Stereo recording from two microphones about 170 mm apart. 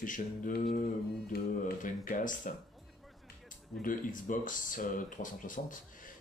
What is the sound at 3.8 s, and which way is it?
Speech, 50° left (ahead or behind).